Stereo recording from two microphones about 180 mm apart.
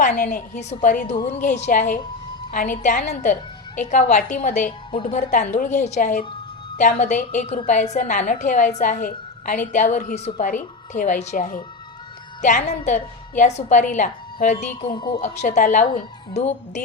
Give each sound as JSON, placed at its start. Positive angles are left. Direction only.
{"t": 0.3, "sound": "a woman's voice", "side_deg": 40}
{"t": 14.8, "sound": "speech", "side_deg": 25}
{"t": 15.2, "sound": "a woman's voice", "side_deg": 40}